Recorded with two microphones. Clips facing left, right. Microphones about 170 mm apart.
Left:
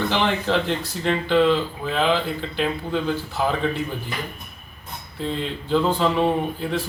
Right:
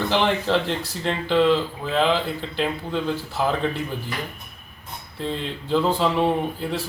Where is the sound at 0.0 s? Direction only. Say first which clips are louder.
Right 1 dB; centre (ahead or behind).